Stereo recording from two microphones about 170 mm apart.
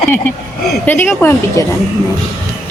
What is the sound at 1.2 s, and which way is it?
Speech, 15° left (ahead or behind).